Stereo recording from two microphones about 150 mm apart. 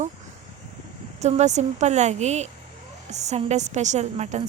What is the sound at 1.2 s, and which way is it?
A woman's voice, 50° right (ahead or behind).